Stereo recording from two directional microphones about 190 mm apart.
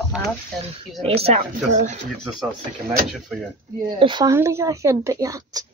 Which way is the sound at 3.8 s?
25° right (ahead or behind).